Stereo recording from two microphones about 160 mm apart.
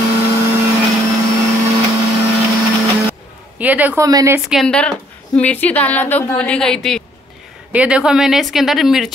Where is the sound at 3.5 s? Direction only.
10° right (ahead or behind).